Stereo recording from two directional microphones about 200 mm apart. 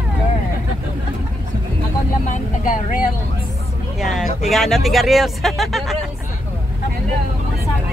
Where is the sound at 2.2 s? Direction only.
40° left (ahead or behind).